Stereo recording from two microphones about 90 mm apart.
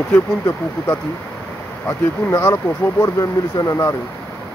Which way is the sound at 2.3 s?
30° left (ahead or behind).